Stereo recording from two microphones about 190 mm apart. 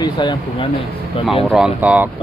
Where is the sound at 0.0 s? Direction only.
20° left (ahead or behind).